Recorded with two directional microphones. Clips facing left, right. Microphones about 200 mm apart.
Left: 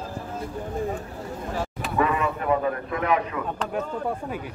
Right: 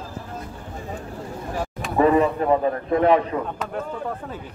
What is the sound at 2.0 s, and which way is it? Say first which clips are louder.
A man's voice: right 7 dB; 35° right (ahead or behind).